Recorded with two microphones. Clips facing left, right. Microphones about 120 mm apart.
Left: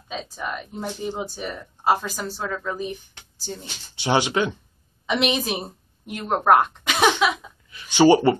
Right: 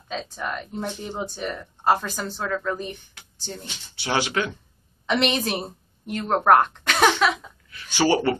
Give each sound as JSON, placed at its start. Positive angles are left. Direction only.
{"t": 0.1, "sound": "speech", "side_deg": 5}
{"t": 4.0, "sound": "speech", "side_deg": 20}
{"t": 5.0, "sound": "speech", "side_deg": 5}